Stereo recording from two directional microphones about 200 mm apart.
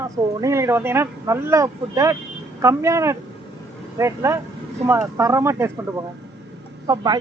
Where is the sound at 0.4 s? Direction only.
15° right (ahead or behind).